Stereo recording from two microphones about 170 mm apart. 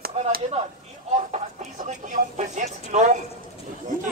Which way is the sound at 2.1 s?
45° right (ahead or behind).